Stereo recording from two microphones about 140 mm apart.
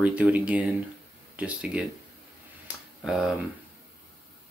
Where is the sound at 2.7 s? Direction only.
Centre (ahead or behind).